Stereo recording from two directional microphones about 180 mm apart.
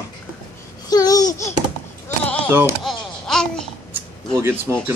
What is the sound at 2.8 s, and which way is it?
Babbling, 5° left (ahead or behind).